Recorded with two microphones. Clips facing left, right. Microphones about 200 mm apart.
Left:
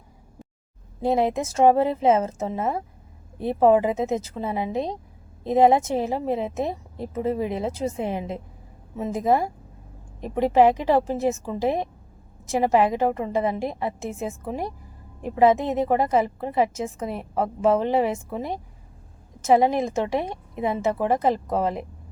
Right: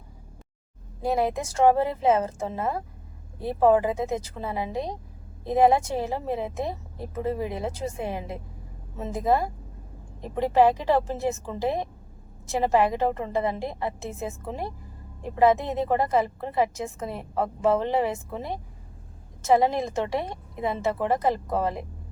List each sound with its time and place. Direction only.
1.0 s a woman's voice: 25° left (ahead or behind)